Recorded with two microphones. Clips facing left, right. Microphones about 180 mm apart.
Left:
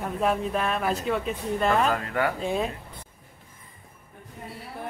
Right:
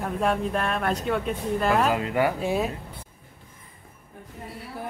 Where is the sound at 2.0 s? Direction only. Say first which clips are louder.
Right 3 dB; 15° right (ahead or behind).